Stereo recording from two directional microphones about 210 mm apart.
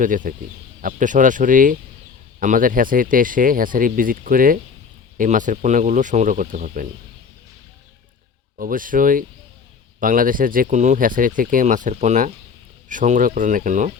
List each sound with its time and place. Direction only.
0.0 s speech: 40° right (ahead or behind)
8.5 s speech: 40° right (ahead or behind)